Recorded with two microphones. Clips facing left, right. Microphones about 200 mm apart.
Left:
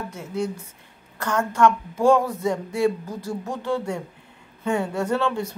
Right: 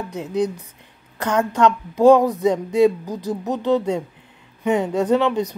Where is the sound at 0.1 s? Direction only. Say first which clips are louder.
Right 8 dB; 20° right (ahead or behind).